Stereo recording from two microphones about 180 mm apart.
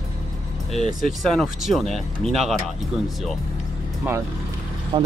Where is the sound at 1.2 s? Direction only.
Centre (ahead or behind).